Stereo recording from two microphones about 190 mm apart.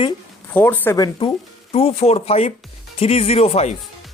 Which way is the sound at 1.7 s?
30° left (ahead or behind).